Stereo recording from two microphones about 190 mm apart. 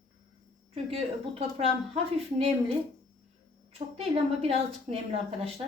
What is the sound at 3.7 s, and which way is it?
A woman's voice, 30° right (ahead or behind).